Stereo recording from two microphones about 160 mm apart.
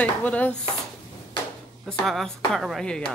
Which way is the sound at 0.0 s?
10° left (ahead or behind).